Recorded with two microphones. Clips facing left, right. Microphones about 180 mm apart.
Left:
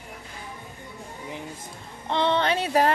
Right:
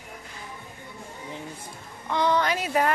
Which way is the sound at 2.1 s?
25° left (ahead or behind).